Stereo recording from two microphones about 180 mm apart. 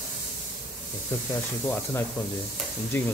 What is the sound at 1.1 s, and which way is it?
Speech, 15° left (ahead or behind).